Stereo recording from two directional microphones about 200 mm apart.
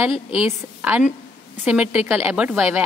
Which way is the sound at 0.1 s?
30° left (ahead or behind).